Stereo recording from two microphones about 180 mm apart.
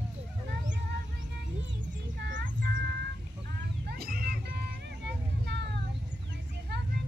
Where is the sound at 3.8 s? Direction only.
55° right (ahead or behind).